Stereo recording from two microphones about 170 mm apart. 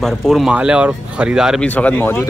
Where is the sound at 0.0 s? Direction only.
Centre (ahead or behind).